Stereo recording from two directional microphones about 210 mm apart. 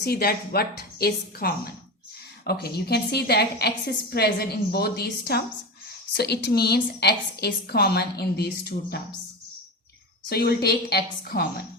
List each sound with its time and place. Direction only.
0.0 s a woman's voice: 50° left (ahead or behind)
10.2 s a woman's voice: 50° left (ahead or behind)